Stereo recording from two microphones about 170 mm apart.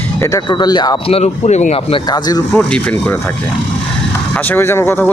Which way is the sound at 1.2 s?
40° left (ahead or behind).